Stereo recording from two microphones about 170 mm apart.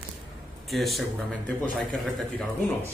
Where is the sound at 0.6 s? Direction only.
Centre (ahead or behind).